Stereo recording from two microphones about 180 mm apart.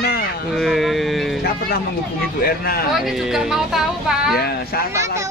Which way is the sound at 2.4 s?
60° left (ahead or behind).